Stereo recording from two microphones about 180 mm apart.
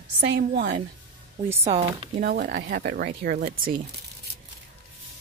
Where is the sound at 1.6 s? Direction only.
35° right (ahead or behind).